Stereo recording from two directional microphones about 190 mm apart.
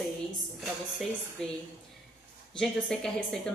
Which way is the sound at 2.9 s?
5° left (ahead or behind).